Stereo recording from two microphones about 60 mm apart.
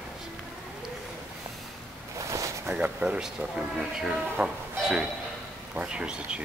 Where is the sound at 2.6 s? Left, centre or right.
Right.